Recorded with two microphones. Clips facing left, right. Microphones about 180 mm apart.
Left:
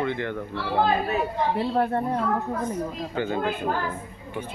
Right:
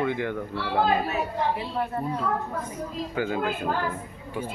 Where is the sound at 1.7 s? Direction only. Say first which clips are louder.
Left 5 dB; 50° left (ahead or behind).